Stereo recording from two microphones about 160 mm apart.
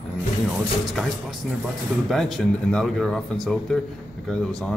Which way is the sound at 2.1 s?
Centre (ahead or behind).